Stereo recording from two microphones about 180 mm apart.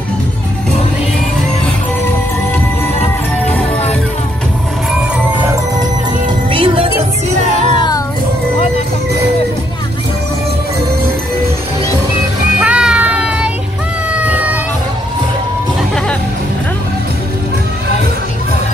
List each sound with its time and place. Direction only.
6.5 s music: 30° right (ahead or behind)
7.7 s music: 25° left (ahead or behind)
12.5 s child singing: 5° right (ahead or behind)
14.2 s vehicle: 10° right (ahead or behind)